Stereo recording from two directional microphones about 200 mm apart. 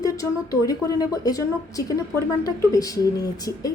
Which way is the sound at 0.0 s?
15° left (ahead or behind).